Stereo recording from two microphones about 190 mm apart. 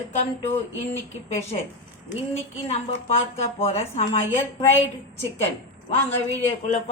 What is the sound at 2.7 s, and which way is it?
A woman's voice, 35° left (ahead or behind).